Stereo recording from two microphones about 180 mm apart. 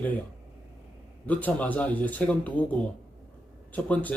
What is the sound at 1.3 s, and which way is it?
Speech, 10° left (ahead or behind).